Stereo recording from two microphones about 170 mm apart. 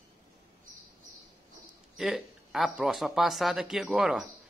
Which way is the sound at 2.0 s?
Centre (ahead or behind).